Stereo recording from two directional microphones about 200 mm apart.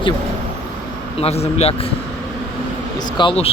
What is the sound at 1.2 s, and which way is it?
Speech, 30° left (ahead or behind).